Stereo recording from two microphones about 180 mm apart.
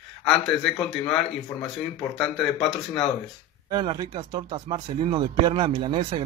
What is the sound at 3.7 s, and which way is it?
Speech, 25° right (ahead or behind).